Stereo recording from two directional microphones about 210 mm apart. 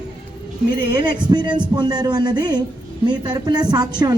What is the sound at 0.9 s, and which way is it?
A woman's voice, 20° right (ahead or behind).